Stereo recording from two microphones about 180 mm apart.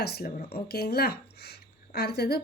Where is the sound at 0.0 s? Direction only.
60° left (ahead or behind).